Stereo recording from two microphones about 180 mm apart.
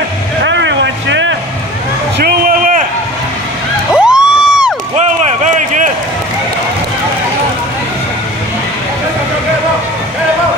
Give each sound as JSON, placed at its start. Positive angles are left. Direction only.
{"t": 0.4, "sound": "vehicle", "side_deg": -85}
{"t": 2.1, "sound": "a sound", "side_deg": -55}
{"t": 3.9, "sound": "crowd", "side_deg": -5}
{"t": 4.9, "sound": "run", "side_deg": -40}